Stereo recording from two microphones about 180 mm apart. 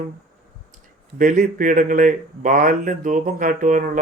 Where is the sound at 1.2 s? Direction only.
45° right (ahead or behind).